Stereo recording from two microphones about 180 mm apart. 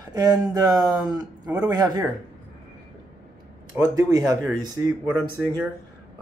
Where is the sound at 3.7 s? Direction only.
20° right (ahead or behind).